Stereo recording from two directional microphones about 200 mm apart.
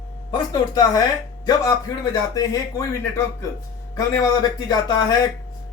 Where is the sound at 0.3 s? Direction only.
20° left (ahead or behind).